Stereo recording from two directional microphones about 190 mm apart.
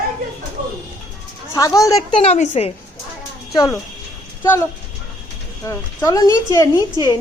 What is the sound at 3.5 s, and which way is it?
Speech, 20° left (ahead or behind).